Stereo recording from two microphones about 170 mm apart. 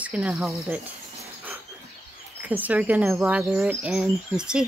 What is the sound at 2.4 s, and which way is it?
Speech, 10° right (ahead or behind).